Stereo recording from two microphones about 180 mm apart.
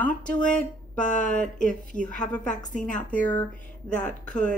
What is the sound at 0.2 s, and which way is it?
Speech, 5° left (ahead or behind).